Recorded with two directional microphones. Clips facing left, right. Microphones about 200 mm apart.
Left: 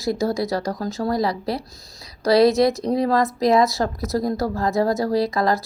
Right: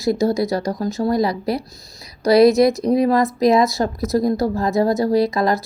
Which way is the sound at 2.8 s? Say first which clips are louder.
Right 4 dB; 15° right (ahead or behind).